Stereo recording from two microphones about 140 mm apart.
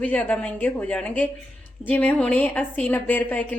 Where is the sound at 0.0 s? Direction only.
10° left (ahead or behind).